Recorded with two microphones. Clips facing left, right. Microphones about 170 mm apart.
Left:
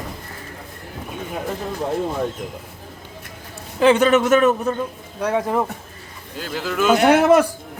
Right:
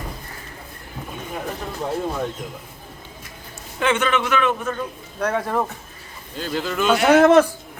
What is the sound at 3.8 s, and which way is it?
Speech, 35° left (ahead or behind).